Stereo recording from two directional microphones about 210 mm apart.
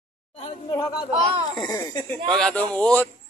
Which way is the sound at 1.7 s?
10° left (ahead or behind).